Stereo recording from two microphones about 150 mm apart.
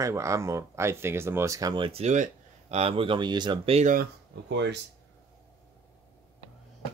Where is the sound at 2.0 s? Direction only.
50° right (ahead or behind); by 3.8 s 35° right (ahead or behind).